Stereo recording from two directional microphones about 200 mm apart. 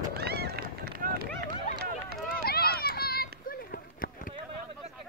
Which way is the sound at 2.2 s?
50° left (ahead or behind).